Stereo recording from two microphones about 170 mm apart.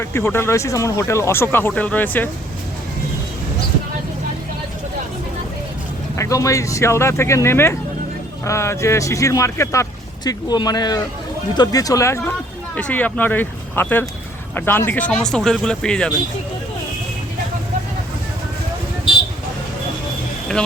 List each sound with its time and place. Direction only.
0.0 s speech: 15° left (ahead or behind)
6.1 s speech: 20° left (ahead or behind)